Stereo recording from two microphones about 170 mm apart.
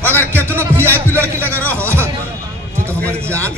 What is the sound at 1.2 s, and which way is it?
Speech, 10° left (ahead or behind).